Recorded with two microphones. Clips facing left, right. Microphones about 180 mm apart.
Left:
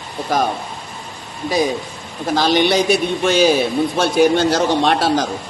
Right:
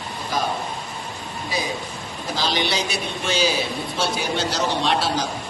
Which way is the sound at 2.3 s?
55° left (ahead or behind).